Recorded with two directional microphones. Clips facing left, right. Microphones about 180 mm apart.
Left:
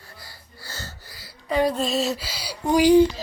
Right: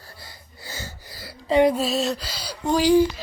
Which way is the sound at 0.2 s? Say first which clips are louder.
Right 1 dB; 15° right (ahead or behind).